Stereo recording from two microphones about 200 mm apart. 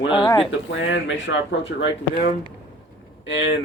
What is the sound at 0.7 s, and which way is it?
Speech, 70° left (ahead or behind).